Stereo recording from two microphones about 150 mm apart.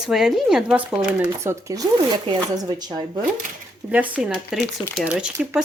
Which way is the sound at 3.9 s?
10° right (ahead or behind).